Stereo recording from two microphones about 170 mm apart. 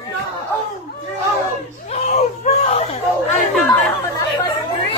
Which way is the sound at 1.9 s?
40° left (ahead or behind).